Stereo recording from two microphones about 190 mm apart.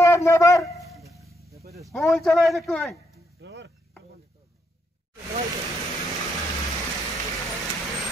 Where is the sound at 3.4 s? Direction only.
70° right (ahead or behind).